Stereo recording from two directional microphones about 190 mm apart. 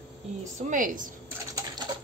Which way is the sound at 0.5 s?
40° right (ahead or behind).